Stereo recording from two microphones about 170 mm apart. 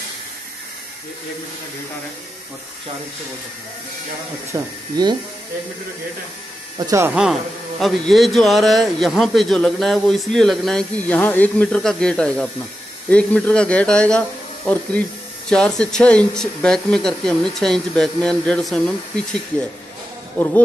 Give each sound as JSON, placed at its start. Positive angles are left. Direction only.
{"t": 4.5, "sound": "speech", "side_deg": -20}
{"t": 6.9, "sound": "a man's voice", "side_deg": -15}
{"t": 15.5, "sound": "a man's voice", "side_deg": 5}
{"t": 20.3, "sound": "speech", "side_deg": 10}